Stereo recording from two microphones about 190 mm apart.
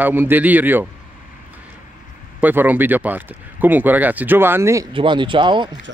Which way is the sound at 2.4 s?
10° right (ahead or behind).